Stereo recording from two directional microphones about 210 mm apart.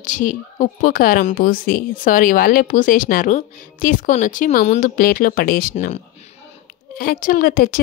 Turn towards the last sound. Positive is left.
turn(degrees=45)  # may be behind; listen again after turning